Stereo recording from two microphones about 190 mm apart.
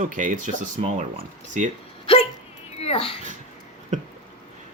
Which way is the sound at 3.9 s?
40° right (ahead or behind).